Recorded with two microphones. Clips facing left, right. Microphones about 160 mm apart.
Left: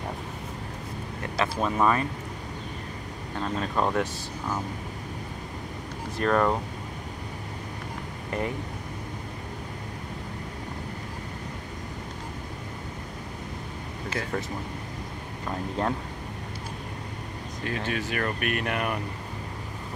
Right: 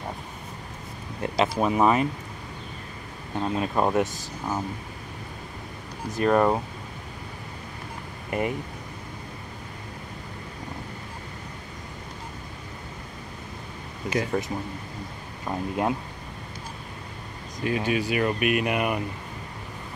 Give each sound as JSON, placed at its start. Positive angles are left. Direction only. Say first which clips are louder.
{"t": 1.2, "sound": "speech", "louder": "right 4 dB", "side_deg": -20}
{"t": 3.3, "sound": "speech", "louder": "right 3 dB", "side_deg": -15}
{"t": 6.2, "sound": "speech", "louder": "right 3 dB", "side_deg": -15}
{"t": 8.3, "sound": "speech", "louder": "right 3 dB", "side_deg": -15}
{"t": 15.4, "sound": "speech", "louder": "right 2 dB", "side_deg": -15}
{"t": 17.6, "sound": "speech", "louder": "right 6 dB", "side_deg": -10}